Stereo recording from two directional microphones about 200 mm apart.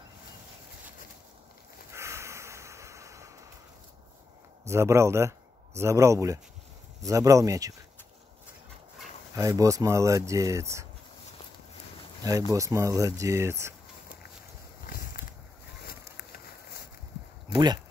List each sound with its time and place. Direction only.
1.9 s snort: 15° right (ahead or behind)
4.6 s speech: 15° right (ahead or behind)
9.3 s speech: 15° right (ahead or behind)
12.3 s speech: 15° right (ahead or behind)
14.9 s a sound: 45° left (ahead or behind)
17.5 s speech: 20° right (ahead or behind)